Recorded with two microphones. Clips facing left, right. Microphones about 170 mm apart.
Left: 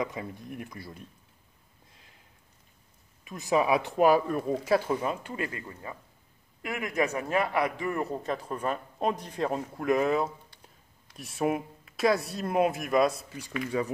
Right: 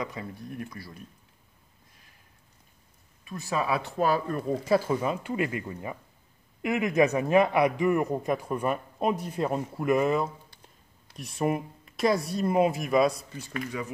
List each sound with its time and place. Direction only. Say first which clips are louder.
0.0 s speech: left 2 dB; 20° left (ahead or behind)
3.3 s speech: left 4 dB; 15° left (ahead or behind); by 13.2 s centre (ahead or behind)
13.7 s speech: left 8 dB; 35° left (ahead or behind)